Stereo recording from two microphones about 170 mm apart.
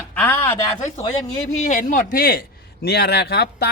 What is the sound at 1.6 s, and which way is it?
A man's voice, 50° left (ahead or behind).